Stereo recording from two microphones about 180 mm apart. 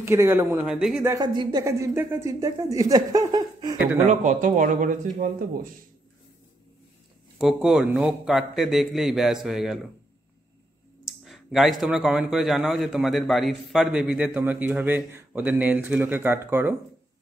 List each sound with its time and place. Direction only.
0.0 s a man's voice: 15° right (ahead or behind)
1.1 s a woman's voice: 25° right (ahead or behind)
3.7 s a man's voice: 5° right (ahead or behind)
4.1 s speech: 45° right (ahead or behind)
7.3 s a man's voice: centre (ahead or behind)
11.2 s a man's voice: centre (ahead or behind)